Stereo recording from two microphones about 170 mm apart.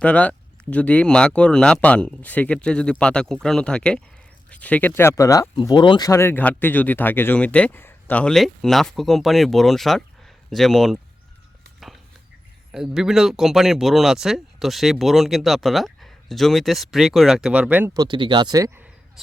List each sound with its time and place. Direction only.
0.0 s speech: 10° left (ahead or behind)
5.5 s speech: 30° left (ahead or behind); by 11.0 s centre (ahead or behind)
12.7 s speech: 5° right (ahead or behind)
17.9 s speech: 25° right (ahead or behind)